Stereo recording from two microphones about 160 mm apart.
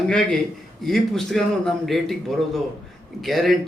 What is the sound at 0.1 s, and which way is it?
Speech, 5° left (ahead or behind).